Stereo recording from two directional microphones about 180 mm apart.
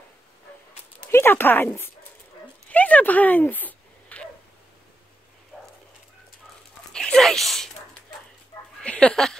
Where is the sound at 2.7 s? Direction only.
10° left (ahead or behind).